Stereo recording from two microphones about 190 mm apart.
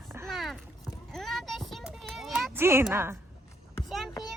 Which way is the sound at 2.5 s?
10° right (ahead or behind).